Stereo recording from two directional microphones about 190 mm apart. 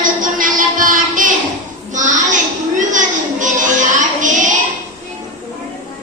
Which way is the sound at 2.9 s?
40° right (ahead or behind).